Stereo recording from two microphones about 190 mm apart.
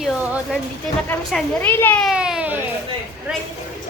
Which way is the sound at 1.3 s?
10° left (ahead or behind).